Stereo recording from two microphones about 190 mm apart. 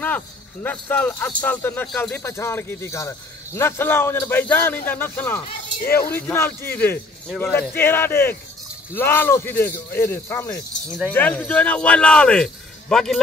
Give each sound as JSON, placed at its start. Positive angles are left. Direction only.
{"t": 0.0, "sound": "speech", "side_deg": 10}
{"t": 5.8, "sound": "speech", "side_deg": 55}
{"t": 6.0, "sound": "speech", "side_deg": 10}